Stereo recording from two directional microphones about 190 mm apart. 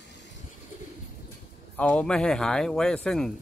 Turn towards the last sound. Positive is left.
turn(degrees=5)  # may be behind; listen again after turning